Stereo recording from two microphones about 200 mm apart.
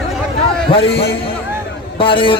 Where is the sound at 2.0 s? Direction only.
25° left (ahead or behind).